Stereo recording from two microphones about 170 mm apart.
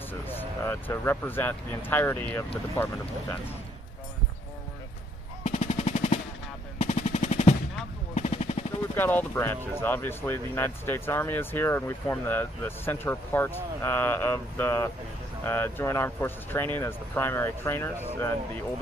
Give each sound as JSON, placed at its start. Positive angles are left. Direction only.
{"t": 0.3, "sound": "speech", "side_deg": 10}
{"t": 5.4, "sound": "machine gun", "side_deg": 40}
{"t": 8.9, "sound": "speech", "side_deg": 10}